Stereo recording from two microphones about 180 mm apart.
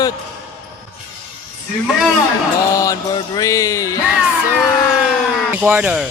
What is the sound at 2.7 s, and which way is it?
Mantra, 20° left (ahead or behind).